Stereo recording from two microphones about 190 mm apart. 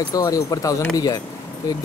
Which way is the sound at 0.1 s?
20° left (ahead or behind).